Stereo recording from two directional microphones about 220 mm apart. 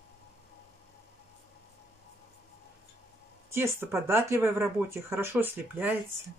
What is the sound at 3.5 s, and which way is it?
Speech, 10° right (ahead or behind).